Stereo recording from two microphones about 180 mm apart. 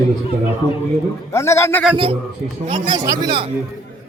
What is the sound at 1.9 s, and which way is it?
Speech, 30° right (ahead or behind).